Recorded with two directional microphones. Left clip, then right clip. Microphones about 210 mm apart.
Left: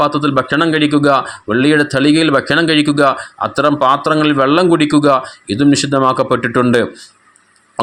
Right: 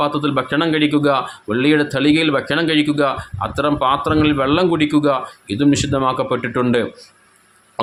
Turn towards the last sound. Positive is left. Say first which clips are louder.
# left 5 dB
turn(degrees=20)  # may be behind; listen again after turning